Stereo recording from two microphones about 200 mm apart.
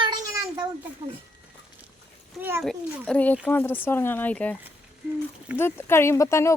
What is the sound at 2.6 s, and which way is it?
Speech, 5° left (ahead or behind).